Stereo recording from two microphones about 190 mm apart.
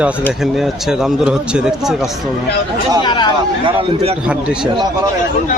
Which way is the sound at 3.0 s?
25° left (ahead or behind).